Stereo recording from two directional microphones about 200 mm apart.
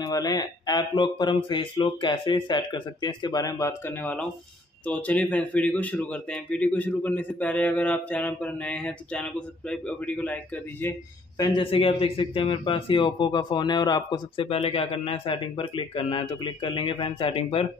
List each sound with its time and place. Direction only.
0.0 s a man's voice: 20° left (ahead or behind)
11.3 s a man's voice: 20° left (ahead or behind)